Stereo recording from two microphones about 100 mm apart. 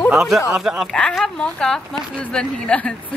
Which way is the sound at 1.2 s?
10° left (ahead or behind).